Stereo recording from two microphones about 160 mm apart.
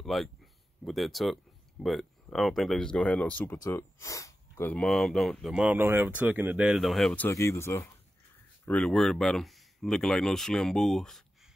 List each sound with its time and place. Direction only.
0.0 s speech: centre (ahead or behind)
7.2 s speech: 15° left (ahead or behind)
8.6 s speech: 5° left (ahead or behind)